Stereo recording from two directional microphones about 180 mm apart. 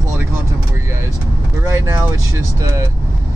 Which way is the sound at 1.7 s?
15° right (ahead or behind).